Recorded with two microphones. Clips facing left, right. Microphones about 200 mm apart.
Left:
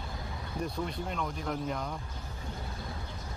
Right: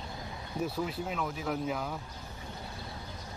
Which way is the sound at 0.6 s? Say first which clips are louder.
Right 2 dB; 5° right (ahead or behind).